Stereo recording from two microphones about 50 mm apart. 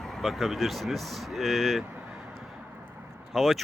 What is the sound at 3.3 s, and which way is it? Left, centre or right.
Speech, centre.